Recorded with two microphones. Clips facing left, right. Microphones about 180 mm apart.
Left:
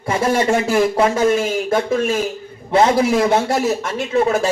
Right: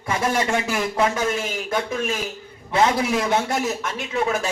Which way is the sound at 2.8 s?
40° left (ahead or behind).